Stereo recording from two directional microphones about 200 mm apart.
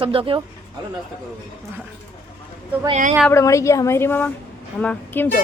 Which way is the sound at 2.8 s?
35° right (ahead or behind).